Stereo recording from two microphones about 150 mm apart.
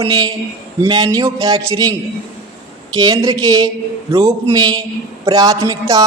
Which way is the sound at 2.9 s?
25° right (ahead or behind).